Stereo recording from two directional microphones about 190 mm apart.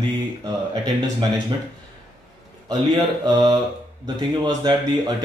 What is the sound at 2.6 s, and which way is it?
A man's voice, 20° right (ahead or behind).